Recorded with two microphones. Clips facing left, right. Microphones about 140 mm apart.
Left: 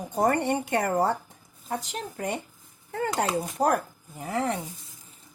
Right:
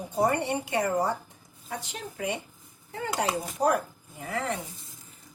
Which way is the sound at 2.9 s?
50° left (ahead or behind).